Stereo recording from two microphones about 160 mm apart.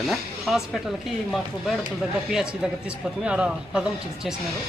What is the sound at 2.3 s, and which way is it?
Speech, 5° right (ahead or behind).